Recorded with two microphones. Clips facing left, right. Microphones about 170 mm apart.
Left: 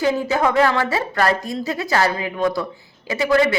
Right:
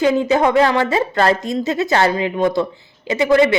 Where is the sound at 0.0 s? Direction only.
20° right (ahead or behind).